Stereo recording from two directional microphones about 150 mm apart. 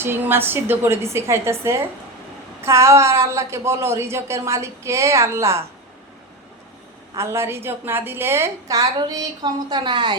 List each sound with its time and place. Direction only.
0.0 s a woman's voice: 15° right (ahead or behind)
7.2 s a woman's voice: 15° right (ahead or behind)